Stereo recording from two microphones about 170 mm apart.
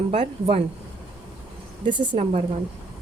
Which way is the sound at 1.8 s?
30° right (ahead or behind).